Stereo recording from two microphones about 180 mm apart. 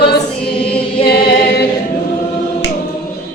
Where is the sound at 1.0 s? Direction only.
60° left (ahead or behind).